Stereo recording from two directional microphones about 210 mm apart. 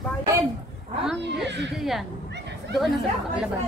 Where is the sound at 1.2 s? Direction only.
55° right (ahead or behind).